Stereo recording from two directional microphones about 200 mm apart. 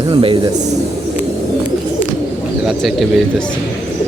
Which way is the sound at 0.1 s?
25° right (ahead or behind).